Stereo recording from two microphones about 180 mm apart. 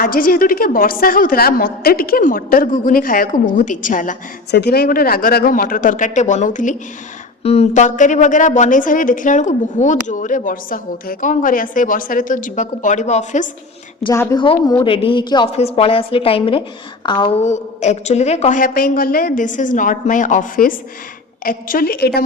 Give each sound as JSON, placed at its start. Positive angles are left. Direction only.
{"t": 0.0, "sound": "a woman's voice", "side_deg": 50}
{"t": 4.5, "sound": "a woman's voice", "side_deg": 65}
{"t": 14.1, "sound": "speech", "side_deg": 15}
{"t": 14.3, "sound": "a woman's voice", "side_deg": 25}